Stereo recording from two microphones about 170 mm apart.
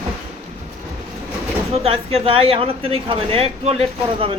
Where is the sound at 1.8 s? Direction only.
35° right (ahead or behind).